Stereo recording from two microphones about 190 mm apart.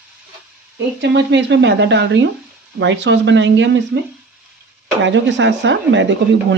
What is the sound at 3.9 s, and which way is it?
Speech, 90° right.